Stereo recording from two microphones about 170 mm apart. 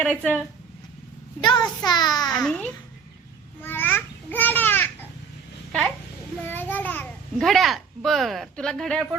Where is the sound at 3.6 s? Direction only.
10° left (ahead or behind).